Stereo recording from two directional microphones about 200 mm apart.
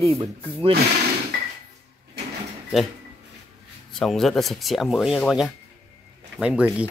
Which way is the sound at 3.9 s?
Centre (ahead or behind).